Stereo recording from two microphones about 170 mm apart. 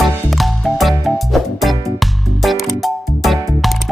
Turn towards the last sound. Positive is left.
turn(degrees=0)  # may be behind; listen again after turning